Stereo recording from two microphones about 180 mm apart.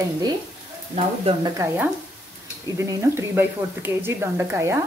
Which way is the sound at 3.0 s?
15° right (ahead or behind).